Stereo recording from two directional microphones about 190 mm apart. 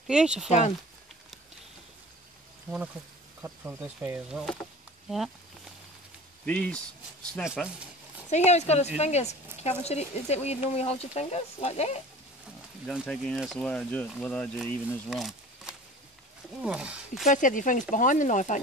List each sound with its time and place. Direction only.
0.0 s speech: 5° right (ahead or behind)
0.5 s speech: 35° left (ahead or behind)
3.4 s speech: 10° right (ahead or behind)
6.4 s speech: 5° left (ahead or behind)
8.5 s speech: 35° left (ahead or behind)
12.8 s speech: centre (ahead or behind)
17.3 s speech: 45° left (ahead or behind)